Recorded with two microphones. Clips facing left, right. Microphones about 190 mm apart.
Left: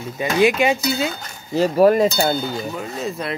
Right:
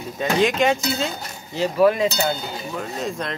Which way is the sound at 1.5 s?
40° left (ahead or behind).